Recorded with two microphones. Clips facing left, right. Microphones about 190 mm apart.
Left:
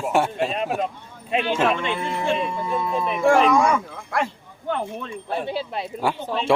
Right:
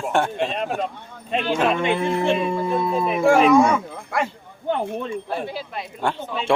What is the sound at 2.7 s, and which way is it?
Speech, 30° right (ahead or behind).